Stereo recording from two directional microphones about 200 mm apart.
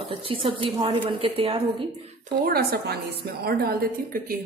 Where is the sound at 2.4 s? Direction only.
50° right (ahead or behind).